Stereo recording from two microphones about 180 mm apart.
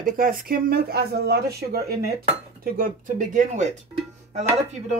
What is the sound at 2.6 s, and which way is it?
Speech, 50° right (ahead or behind).